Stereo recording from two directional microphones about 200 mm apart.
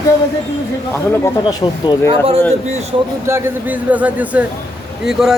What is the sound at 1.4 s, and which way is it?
Speech, 20° left (ahead or behind).